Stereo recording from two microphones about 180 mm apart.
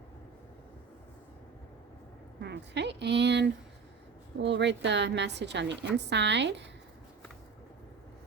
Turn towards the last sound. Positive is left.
turn(degrees=-75)  # may be behind; listen again after turning